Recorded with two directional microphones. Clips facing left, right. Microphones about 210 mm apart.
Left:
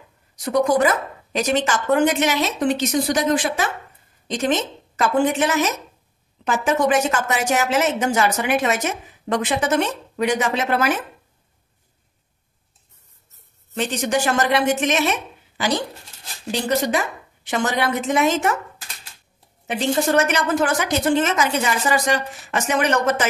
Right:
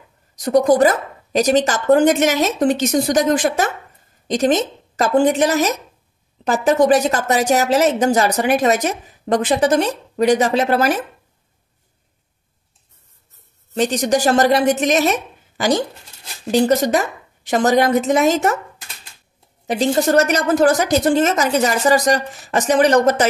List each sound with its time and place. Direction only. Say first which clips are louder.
0.4 s a woman's voice: right 5 dB; 40° right (ahead or behind)
13.7 s a woman's voice: right 5 dB; 40° right (ahead or behind)
19.6 s a woman's voice: right 4 dB; 35° right (ahead or behind)